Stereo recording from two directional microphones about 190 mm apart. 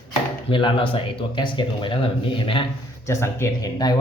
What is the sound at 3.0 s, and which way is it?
Speech, 15° left (ahead or behind).